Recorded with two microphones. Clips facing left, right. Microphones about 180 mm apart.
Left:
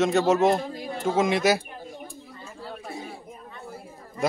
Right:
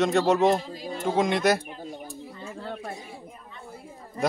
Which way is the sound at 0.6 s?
60° left (ahead or behind).